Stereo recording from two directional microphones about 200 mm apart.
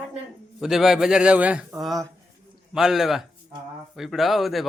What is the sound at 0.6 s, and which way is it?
A man's voice, centre (ahead or behind).